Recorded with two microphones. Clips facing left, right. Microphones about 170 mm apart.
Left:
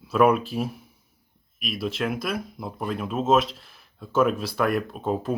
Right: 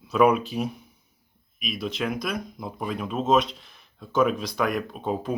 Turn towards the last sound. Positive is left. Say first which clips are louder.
# left 2 dB
turn(degrees=0)  # may be behind; listen again after turning